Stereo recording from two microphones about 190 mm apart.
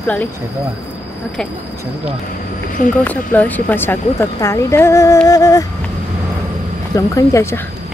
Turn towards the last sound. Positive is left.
turn(degrees=15)  # may be behind; listen again after turning